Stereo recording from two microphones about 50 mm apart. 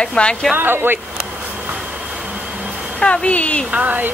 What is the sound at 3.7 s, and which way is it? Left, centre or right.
Speech, right.